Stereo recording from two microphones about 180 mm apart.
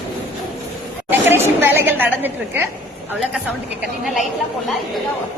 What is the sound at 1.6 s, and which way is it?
A woman's voice, 10° right (ahead or behind).